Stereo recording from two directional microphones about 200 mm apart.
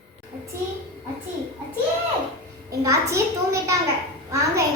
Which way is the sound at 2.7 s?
15° right (ahead or behind).